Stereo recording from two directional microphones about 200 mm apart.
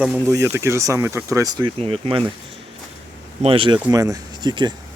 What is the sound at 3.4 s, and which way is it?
Speech, 25° right (ahead or behind).